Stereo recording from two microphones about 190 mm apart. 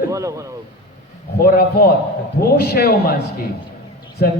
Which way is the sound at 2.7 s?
55° left (ahead or behind).